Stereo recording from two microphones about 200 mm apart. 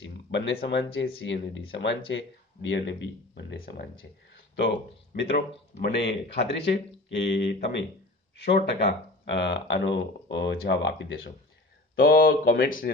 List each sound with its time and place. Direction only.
0.0 s speech: 65° left (ahead or behind)
11.9 s speech: 45° left (ahead or behind)